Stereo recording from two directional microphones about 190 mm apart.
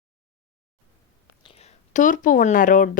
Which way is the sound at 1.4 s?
30° left (ahead or behind).